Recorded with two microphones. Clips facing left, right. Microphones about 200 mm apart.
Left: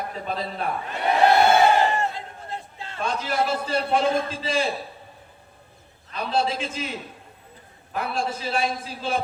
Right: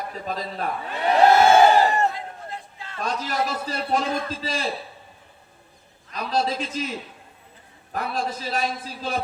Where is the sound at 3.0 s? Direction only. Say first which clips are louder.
Left 2 dB; 40° right (ahead or behind).